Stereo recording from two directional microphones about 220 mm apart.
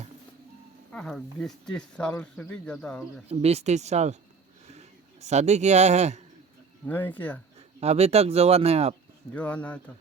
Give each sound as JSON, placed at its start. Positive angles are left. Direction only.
{"t": 0.9, "sound": "speech", "side_deg": 5}
{"t": 3.2, "sound": "speech", "side_deg": -30}
{"t": 6.8, "sound": "speech", "side_deg": 10}
{"t": 7.8, "sound": "speech", "side_deg": -30}
{"t": 9.3, "sound": "speech", "side_deg": 5}